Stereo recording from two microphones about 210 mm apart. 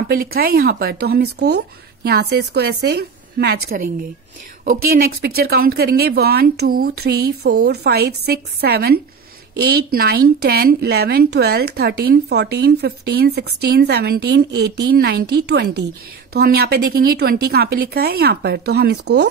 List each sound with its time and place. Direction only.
0.1 s a woman's voice: 45° right (ahead or behind)
4.6 s a woman's voice: 45° right (ahead or behind)